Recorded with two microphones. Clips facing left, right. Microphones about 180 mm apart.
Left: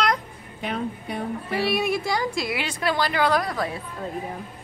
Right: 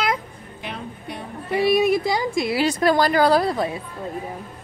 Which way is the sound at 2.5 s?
40° right (ahead or behind).